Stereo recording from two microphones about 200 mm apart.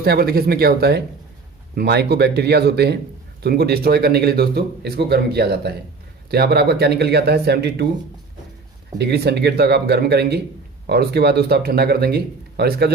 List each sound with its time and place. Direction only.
0.0 s speech: 50° right (ahead or behind)
9.0 s speech: 55° right (ahead or behind)